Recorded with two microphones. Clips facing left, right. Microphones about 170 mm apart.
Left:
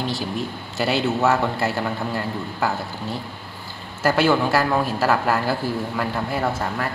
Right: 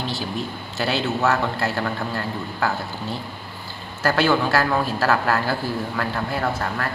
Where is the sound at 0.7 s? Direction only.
10° left (ahead or behind).